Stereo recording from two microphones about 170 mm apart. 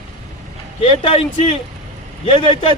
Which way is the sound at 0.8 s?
35° left (ahead or behind).